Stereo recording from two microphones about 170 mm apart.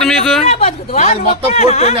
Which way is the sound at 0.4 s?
40° left (ahead or behind).